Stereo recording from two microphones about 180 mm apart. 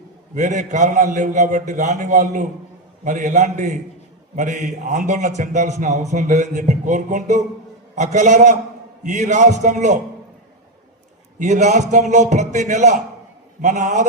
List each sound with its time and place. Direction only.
0.3 s a man's voice: 45° right (ahead or behind)
11.3 s a man's voice: 40° right (ahead or behind)